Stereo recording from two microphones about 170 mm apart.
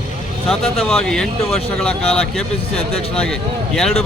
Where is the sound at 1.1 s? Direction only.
5° left (ahead or behind).